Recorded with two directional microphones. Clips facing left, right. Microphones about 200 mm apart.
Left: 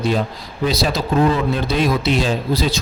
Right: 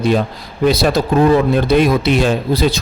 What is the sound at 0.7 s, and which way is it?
A man's voice, 55° right (ahead or behind).